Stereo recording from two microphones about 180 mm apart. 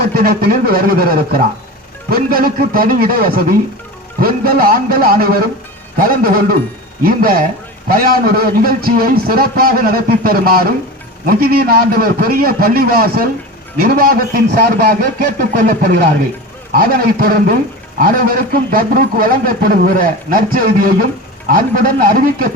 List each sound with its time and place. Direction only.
0.0 s a man's voice: 55° right (ahead or behind)